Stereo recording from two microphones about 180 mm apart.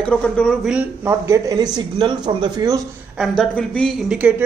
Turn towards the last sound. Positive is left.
turn(degrees=-10)  # may be behind; listen again after turning